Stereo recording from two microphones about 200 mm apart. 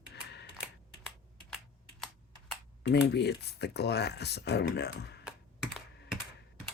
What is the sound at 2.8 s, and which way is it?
Speech, 55° left (ahead or behind).